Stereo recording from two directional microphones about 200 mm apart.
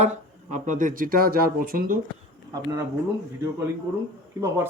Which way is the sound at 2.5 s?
20° right (ahead or behind).